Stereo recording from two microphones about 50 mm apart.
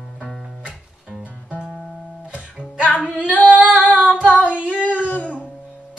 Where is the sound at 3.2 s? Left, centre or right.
Left.